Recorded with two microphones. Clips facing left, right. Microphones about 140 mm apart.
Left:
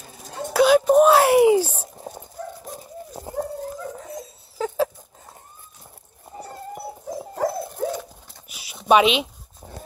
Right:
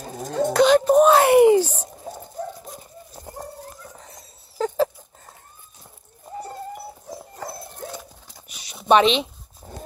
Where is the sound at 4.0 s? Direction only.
Centre (ahead or behind).